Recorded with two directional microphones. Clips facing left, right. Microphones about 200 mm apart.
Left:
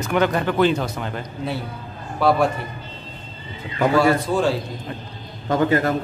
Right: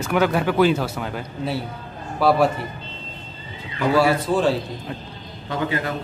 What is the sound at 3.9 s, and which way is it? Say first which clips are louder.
Speech: even; 5° right (ahead or behind).